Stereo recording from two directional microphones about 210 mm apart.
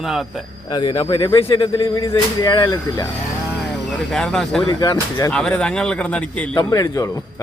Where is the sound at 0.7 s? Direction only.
20° left (ahead or behind).